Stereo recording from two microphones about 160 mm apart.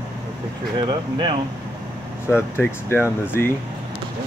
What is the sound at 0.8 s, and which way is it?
Speech, 30° right (ahead or behind).